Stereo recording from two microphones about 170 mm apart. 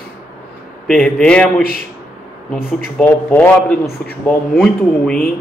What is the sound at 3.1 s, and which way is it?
A man's voice, 10° left (ahead or behind).